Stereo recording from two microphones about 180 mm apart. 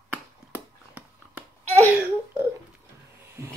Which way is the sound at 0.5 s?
10° right (ahead or behind).